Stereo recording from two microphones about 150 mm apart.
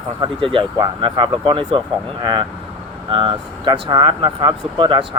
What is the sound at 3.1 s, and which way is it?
Speech, 35° right (ahead or behind).